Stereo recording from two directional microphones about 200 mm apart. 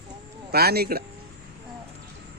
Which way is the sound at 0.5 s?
50° right (ahead or behind).